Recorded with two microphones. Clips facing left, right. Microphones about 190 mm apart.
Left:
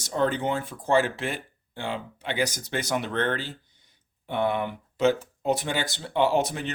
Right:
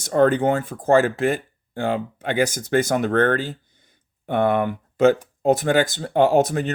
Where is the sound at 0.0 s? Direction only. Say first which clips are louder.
Right 8 dB; 55° right (ahead or behind).